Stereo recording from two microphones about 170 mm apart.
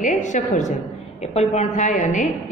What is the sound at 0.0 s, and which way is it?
A woman's voice, 45° left (ahead or behind).